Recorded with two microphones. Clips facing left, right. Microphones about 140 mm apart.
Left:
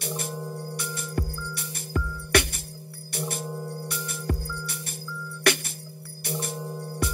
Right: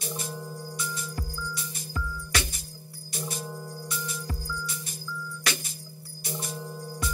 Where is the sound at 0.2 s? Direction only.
65° left (ahead or behind).